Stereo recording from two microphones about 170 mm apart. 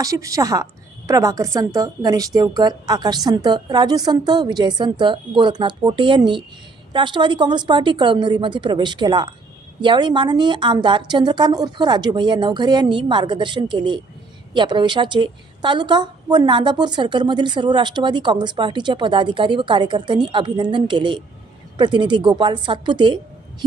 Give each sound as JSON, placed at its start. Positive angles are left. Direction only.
{"t": 0.0, "sound": "a woman's voice", "side_deg": -20}